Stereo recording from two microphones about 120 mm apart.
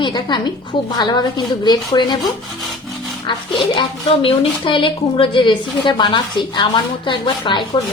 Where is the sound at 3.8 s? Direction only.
45° left (ahead or behind).